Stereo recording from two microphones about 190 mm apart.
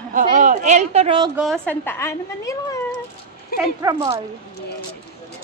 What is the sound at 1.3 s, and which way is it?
Speech, centre (ahead or behind).